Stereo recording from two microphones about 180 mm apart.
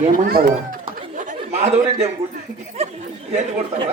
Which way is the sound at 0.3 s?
55° right (ahead or behind).